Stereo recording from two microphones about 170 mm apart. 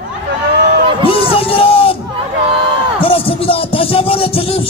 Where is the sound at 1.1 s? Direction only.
35° left (ahead or behind).